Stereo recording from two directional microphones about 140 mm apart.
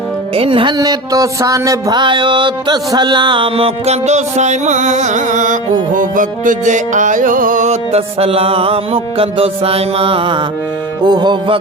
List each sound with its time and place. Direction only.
0.3 s music: 40° right (ahead or behind)